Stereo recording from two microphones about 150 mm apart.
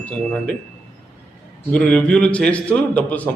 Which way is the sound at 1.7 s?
10° left (ahead or behind).